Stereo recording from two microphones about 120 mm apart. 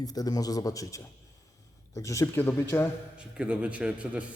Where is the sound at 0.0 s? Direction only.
30° left (ahead or behind).